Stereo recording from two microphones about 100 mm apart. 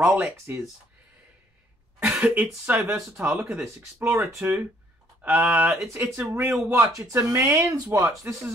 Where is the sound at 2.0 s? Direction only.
20° right (ahead or behind).